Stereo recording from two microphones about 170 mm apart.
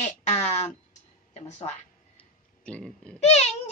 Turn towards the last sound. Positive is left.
turn(degrees=40)  # may be behind; listen again after turning